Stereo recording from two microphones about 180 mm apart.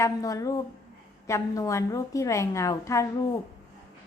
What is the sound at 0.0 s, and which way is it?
A woman's voice, 20° left (ahead or behind).